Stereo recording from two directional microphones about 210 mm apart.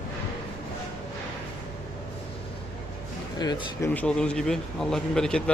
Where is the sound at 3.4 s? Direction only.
20° left (ahead or behind).